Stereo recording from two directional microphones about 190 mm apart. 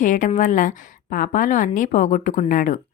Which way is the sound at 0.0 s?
40° left (ahead or behind).